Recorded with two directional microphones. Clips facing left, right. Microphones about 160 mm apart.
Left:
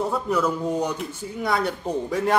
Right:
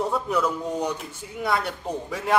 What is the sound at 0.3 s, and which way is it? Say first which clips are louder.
A man's voice: left 2 dB; 5° left (ahead or behind).